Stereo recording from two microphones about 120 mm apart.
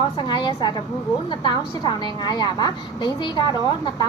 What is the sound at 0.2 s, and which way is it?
A woman's voice, 40° left (ahead or behind).